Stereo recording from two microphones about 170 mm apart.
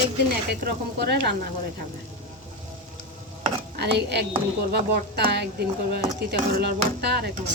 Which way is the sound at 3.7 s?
75° right (ahead or behind).